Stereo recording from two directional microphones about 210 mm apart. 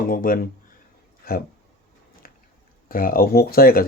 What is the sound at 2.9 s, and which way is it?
Speech, 45° left (ahead or behind).